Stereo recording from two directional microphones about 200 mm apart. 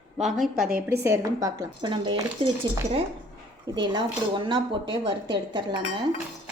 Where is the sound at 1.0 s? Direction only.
15° right (ahead or behind).